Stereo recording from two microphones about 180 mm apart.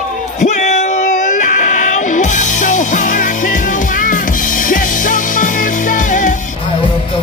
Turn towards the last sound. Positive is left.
turn(degrees=45)  # may be behind; listen again after turning